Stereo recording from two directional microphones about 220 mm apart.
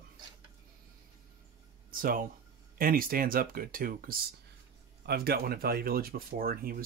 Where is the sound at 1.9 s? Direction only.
40° right (ahead or behind).